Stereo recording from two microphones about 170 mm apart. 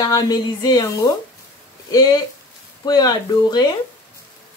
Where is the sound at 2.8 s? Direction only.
25° left (ahead or behind).